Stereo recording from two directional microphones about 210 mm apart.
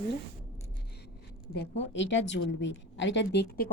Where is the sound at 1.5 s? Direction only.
55° left (ahead or behind).